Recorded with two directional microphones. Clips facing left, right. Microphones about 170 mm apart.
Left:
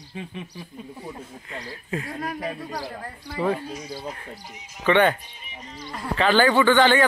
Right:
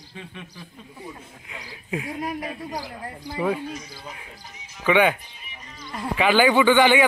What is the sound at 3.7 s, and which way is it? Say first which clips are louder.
Speech: left 5 dB; 30° left (ahead or behind).